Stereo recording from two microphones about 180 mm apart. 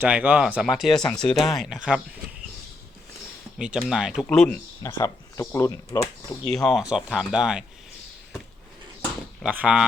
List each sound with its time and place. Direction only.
0.0 s speech: 10° right (ahead or behind)
3.6 s speech: 5° right (ahead or behind)
4.8 s speech: 15° left (ahead or behind)
6.5 s speech: centre (ahead or behind)
9.4 s speech: 5° right (ahead or behind)